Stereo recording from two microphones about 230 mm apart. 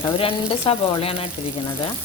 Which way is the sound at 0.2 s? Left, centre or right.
Left.